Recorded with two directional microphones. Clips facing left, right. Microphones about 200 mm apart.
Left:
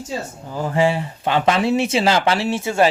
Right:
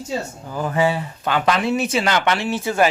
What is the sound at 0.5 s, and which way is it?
Speech, 25° left (ahead or behind).